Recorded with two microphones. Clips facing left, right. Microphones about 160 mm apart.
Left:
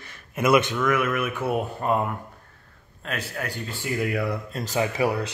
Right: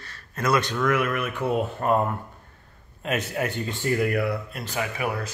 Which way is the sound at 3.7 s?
Centre (ahead or behind).